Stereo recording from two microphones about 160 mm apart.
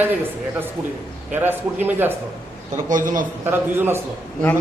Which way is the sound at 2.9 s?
55° right (ahead or behind).